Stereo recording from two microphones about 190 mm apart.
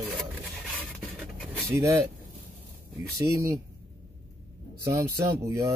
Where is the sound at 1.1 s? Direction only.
Centre (ahead or behind).